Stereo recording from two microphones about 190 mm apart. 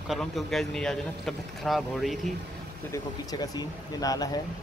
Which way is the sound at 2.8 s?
15° left (ahead or behind).